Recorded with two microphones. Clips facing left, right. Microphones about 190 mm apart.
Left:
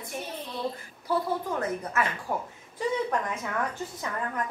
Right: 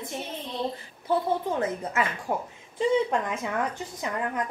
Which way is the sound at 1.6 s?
25° right (ahead or behind).